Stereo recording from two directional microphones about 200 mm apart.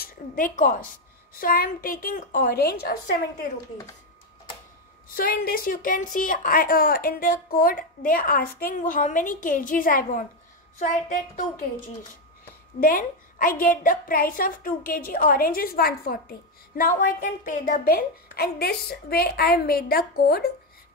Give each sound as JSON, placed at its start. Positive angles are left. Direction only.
{"t": 0.0, "sound": "a woman's voice", "side_deg": 40}
{"t": 5.0, "sound": "a woman's voice", "side_deg": 45}
{"t": 12.8, "sound": "a woman's voice", "side_deg": 45}